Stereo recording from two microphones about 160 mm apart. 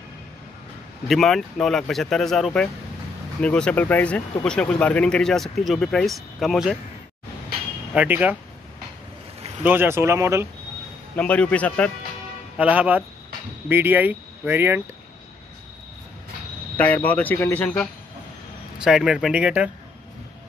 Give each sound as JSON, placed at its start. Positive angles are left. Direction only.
{"t": 1.0, "sound": "speech", "side_deg": 0}
{"t": 7.9, "sound": "speech", "side_deg": -10}
{"t": 9.6, "sound": "speech", "side_deg": -10}
{"t": 11.1, "sound": "speech", "side_deg": 10}
{"t": 12.5, "sound": "speech", "side_deg": -10}
{"t": 16.7, "sound": "speech", "side_deg": 10}
{"t": 18.8, "sound": "speech", "side_deg": -5}